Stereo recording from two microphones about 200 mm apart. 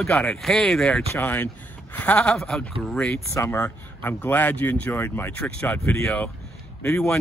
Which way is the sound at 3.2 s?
15° left (ahead or behind).